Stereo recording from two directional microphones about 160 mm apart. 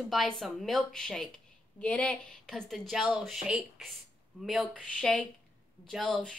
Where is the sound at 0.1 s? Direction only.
Centre (ahead or behind).